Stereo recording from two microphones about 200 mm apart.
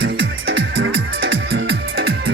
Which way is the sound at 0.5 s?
60° right (ahead or behind).